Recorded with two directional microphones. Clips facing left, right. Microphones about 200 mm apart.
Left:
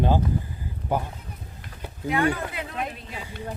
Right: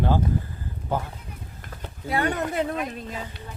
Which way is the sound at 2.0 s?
35° right (ahead or behind).